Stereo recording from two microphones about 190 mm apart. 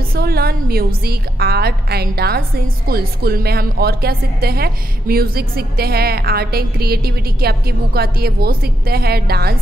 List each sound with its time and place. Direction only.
0.1 s a woman's voice: 55° right (ahead or behind)